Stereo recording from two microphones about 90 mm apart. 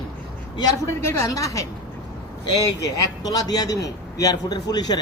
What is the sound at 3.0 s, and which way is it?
A man's voice, 45° left (ahead or behind).